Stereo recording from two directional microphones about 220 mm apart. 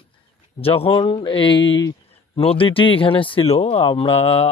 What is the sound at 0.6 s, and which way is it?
Speech, 25° left (ahead or behind).